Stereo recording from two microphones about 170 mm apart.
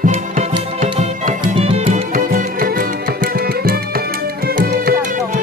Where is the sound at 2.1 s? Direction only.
55° right (ahead or behind).